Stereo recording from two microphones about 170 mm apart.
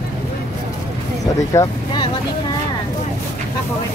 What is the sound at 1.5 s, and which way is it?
Speech, 20° left (ahead or behind).